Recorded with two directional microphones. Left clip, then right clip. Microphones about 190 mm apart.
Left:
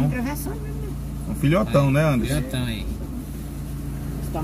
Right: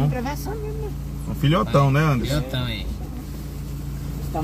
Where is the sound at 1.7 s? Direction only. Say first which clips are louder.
Even; 35° right (ahead or behind).